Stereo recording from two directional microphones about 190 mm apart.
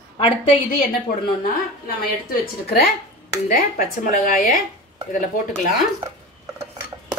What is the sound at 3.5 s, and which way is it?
Speech, 50° left (ahead or behind).